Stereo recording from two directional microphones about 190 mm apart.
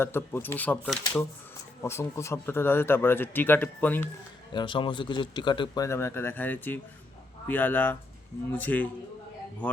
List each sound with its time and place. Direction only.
0.0 s speech: 10° left (ahead or behind)
4.5 s speech: 25° left (ahead or behind); by 8.9 s 10° left (ahead or behind)